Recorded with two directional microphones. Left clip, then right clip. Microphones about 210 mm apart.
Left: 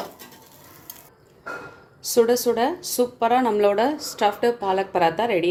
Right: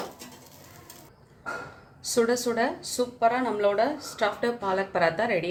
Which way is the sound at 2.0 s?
25° left (ahead or behind).